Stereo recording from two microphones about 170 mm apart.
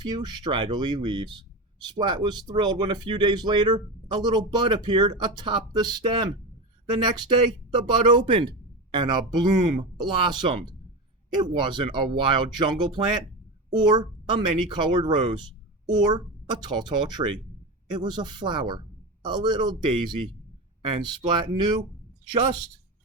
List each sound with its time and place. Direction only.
0.0 s speech: 25° right (ahead or behind)
7.8 s speech: 30° right (ahead or behind)